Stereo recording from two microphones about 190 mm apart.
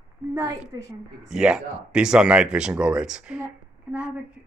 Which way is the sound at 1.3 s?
5° right (ahead or behind).